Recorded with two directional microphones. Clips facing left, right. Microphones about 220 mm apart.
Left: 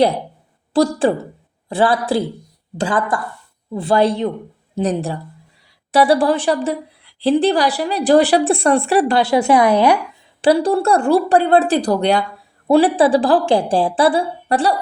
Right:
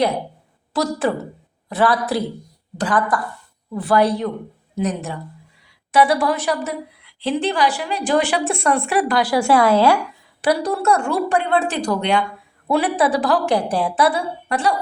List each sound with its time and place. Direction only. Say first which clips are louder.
0.7 s a woman's voice: left 5 dB; 30° left (ahead or behind)
10.4 s a woman's voice: left 4 dB; 30° left (ahead or behind)